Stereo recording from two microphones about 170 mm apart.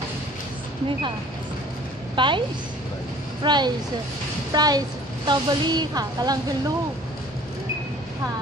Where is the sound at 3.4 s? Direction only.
25° right (ahead or behind).